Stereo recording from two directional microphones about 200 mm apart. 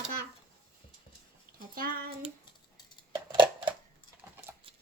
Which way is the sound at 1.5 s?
45° right (ahead or behind).